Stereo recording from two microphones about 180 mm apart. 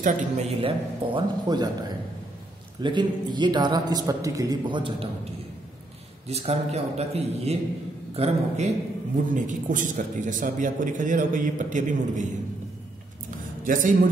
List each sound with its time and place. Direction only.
0.0 s a man's voice: 40° right (ahead or behind)
2.8 s a man's voice: 25° right (ahead or behind)
6.2 s a man's voice: 35° right (ahead or behind)